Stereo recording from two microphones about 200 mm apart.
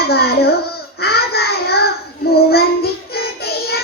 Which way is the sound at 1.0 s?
55° left (ahead or behind).